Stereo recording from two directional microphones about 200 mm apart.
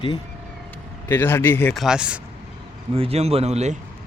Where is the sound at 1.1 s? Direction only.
10° left (ahead or behind).